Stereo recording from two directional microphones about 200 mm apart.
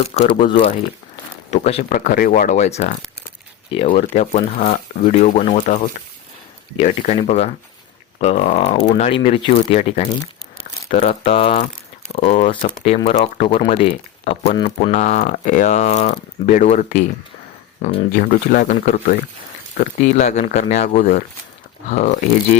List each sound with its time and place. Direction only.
0.0 s speech: 30° left (ahead or behind)
14.9 s speech: 40° left (ahead or behind)
18.1 s speech: 45° left (ahead or behind)